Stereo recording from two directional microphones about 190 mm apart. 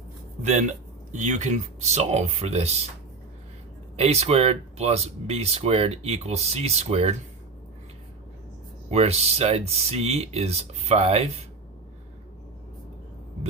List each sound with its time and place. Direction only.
1.1 s speech: 40° right (ahead or behind)
3.9 s speech: 30° right (ahead or behind)
8.9 s speech: 35° right (ahead or behind)